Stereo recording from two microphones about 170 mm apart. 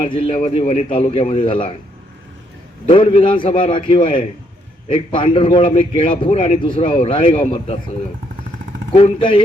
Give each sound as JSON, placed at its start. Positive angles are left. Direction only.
{"t": 0.0, "sound": "a man's voice", "side_deg": 35}
{"t": 2.9, "sound": "a man's voice", "side_deg": 30}
{"t": 9.0, "sound": "a man's voice", "side_deg": 35}